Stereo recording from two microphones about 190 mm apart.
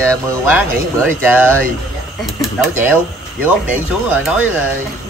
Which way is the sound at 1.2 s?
10° right (ahead or behind).